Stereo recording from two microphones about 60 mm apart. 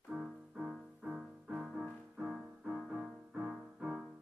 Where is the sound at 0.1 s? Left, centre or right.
Centre.